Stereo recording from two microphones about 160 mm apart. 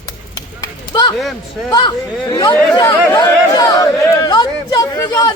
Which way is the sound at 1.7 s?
25° left (ahead or behind).